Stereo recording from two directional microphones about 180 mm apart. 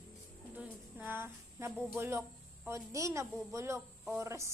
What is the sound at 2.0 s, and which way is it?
A woman's voice, 15° right (ahead or behind).